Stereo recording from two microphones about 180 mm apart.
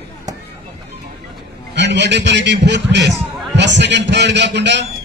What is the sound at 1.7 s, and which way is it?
A man's voice, 75° right (ahead or behind).